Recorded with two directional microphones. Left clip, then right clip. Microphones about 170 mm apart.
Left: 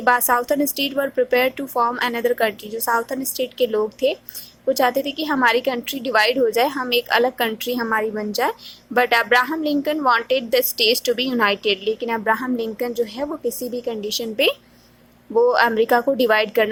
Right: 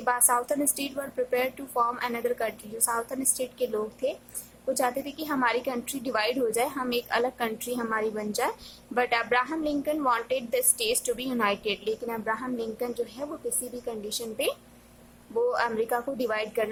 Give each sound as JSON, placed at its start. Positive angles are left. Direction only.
{"t": 0.0, "sound": "a woman's voice", "side_deg": 25}